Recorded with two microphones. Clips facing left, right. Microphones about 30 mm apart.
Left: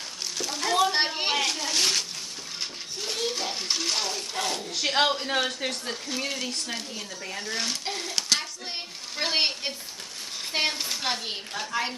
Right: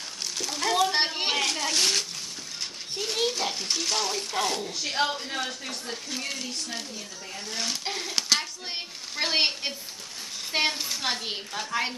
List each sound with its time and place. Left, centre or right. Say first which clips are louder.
0.4 s a sound: left 1 dB; centre
3.5 s stir: even; centre
4.1 s a child's voice: right 2 dB; centre
4.6 s a woman's voice: left 4 dB; left
6.0 s stir: left 3 dB; centre
7.5 s a child's voice: right 1 dB; centre